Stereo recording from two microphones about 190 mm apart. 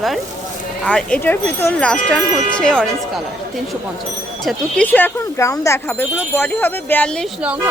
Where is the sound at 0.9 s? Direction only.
5° left (ahead or behind).